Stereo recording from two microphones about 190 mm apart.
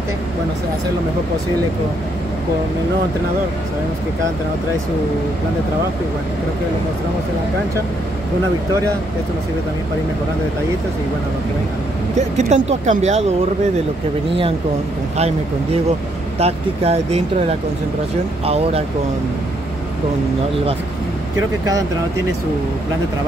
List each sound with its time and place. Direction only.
12.4 s speech: 35° right (ahead or behind)
15.1 s speech: 35° right (ahead or behind)